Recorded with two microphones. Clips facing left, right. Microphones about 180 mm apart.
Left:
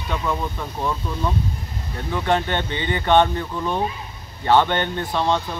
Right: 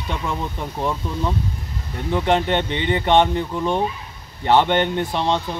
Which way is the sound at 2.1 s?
25° right (ahead or behind).